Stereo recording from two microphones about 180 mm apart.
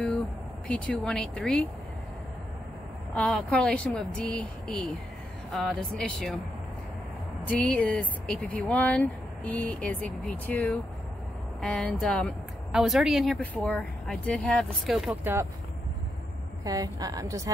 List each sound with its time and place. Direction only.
0.7 s speech: 5° left (ahead or behind)
3.2 s speech: 5° left (ahead or behind)
7.4 s speech: 10° left (ahead or behind)
16.6 s a woman's voice: 20° right (ahead or behind)